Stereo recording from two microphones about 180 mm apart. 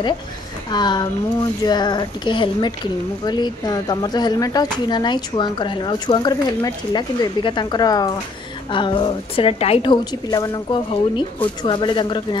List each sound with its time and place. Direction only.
0.7 s speech: 25° left (ahead or behind)